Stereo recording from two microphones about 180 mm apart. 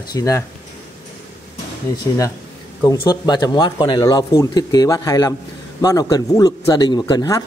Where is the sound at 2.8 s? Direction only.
25° left (ahead or behind).